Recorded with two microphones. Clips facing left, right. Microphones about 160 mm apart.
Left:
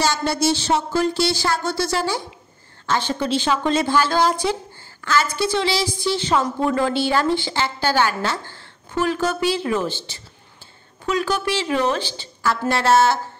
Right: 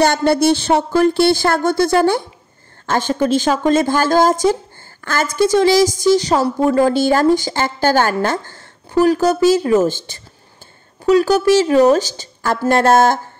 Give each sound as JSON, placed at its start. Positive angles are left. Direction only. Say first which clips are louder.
{"t": 0.0, "sound": "a woman's voice", "louder": "right 7 dB", "side_deg": -55}